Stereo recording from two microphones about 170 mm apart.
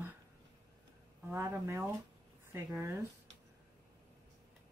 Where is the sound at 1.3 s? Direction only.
15° right (ahead or behind).